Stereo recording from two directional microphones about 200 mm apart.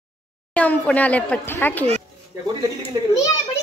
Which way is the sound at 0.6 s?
5° left (ahead or behind).